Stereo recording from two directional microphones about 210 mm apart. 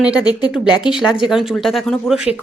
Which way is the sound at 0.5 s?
5° right (ahead or behind).